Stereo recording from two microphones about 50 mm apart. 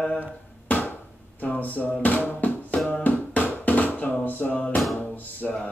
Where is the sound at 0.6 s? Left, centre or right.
Left.